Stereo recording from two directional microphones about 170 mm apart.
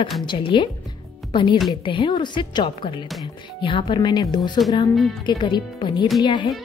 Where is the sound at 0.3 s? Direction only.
30° left (ahead or behind).